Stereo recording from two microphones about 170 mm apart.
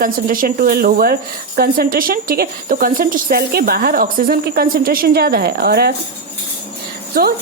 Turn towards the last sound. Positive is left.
turn(degrees=-65)  # may be behind; listen again after turning